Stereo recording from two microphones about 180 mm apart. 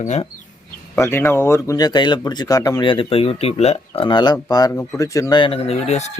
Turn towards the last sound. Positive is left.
turn(degrees=40)  # may be behind; listen again after turning